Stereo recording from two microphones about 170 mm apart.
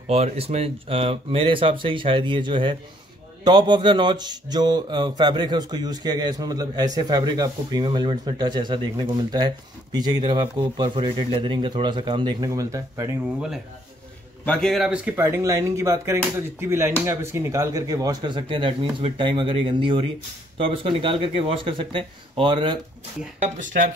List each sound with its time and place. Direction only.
0.0 s speech: 35° right (ahead or behind); by 13.1 s 20° right (ahead or behind)
14.4 s speech: 5° left (ahead or behind); by 22.8 s 30° right (ahead or behind)
23.4 s speech: 50° right (ahead or behind)